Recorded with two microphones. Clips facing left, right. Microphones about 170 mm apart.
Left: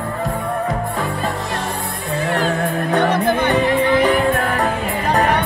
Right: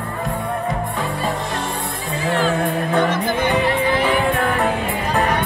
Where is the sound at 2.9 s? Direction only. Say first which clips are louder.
Left 5 dB; 65° left (ahead or behind).